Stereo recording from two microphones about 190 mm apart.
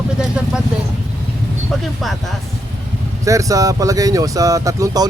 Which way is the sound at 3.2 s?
15° right (ahead or behind).